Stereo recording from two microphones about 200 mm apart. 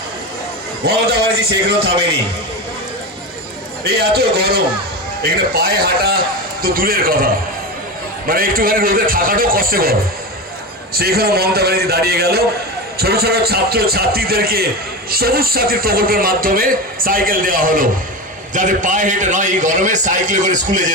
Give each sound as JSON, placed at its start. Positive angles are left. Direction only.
{"t": 0.9, "sound": "a man's voice", "side_deg": -55}
{"t": 3.8, "sound": "a man's voice", "side_deg": -50}
{"t": 8.3, "sound": "a man's voice", "side_deg": -45}
{"t": 10.9, "sound": "a man's voice", "side_deg": -50}